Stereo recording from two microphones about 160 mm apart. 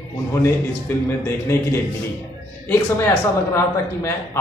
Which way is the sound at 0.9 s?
10° left (ahead or behind).